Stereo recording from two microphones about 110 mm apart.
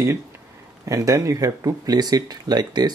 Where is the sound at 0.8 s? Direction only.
30° right (ahead or behind).